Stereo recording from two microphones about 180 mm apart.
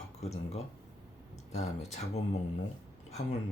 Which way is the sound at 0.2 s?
35° left (ahead or behind).